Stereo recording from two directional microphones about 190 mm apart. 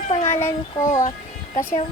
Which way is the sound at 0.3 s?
10° left (ahead or behind).